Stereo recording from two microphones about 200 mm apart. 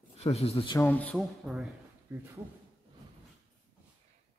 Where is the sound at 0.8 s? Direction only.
5° left (ahead or behind).